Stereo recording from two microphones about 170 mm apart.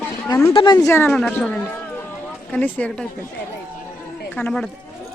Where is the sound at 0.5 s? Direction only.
25° left (ahead or behind).